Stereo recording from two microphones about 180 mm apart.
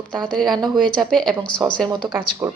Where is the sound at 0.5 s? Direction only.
25° right (ahead or behind).